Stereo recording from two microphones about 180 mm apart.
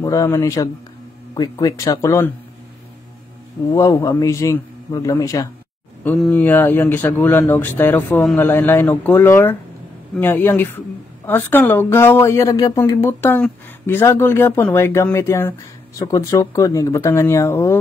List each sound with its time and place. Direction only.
0.0 s a woman's voice: 20° left (ahead or behind)
3.7 s a woman's voice: 15° left (ahead or behind)
8.2 s a man's voice: centre (ahead or behind)